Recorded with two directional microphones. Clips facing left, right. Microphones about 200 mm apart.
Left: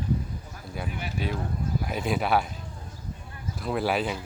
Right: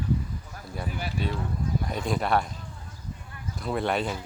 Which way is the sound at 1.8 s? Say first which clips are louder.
Left 3 dB; 5° left (ahead or behind).